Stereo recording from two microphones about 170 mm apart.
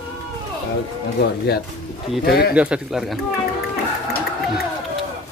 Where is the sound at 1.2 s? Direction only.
75° left (ahead or behind).